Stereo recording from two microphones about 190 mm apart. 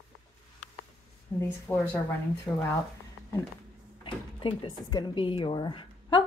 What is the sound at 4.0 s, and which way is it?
Speech, 25° left (ahead or behind).